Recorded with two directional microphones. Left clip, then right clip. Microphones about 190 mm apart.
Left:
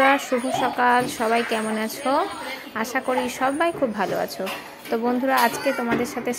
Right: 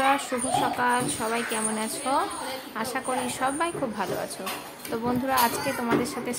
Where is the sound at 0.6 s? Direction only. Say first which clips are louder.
Left 5 dB; 25° left (ahead or behind).